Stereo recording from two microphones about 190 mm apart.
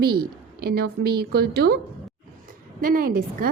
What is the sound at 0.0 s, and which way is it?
A woman's voice, 55° right (ahead or behind).